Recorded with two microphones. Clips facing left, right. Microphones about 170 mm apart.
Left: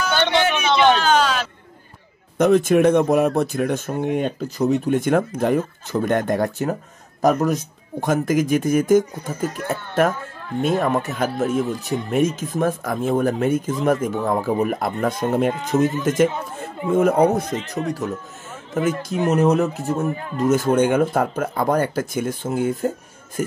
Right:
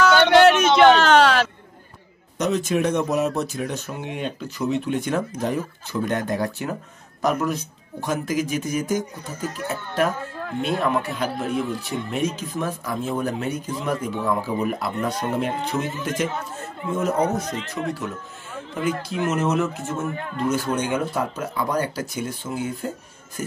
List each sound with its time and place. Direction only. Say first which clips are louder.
0.0 s a sound: right 6 dB; 70° right (ahead or behind)
2.3 s speech: left 7 dB; 55° left (ahead or behind)
16.9 s a man's voice: left 7 dB; 55° left (ahead or behind)
17.6 s speech: left 3 dB; 40° left (ahead or behind)